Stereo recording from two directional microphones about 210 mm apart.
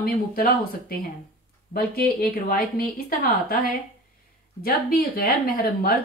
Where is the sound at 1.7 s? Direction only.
45° left (ahead or behind).